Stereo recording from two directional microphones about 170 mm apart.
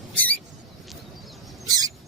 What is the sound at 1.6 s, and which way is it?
Bird, 20° right (ahead or behind).